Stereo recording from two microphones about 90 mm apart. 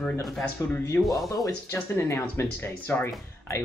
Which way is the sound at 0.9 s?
40° left (ahead or behind).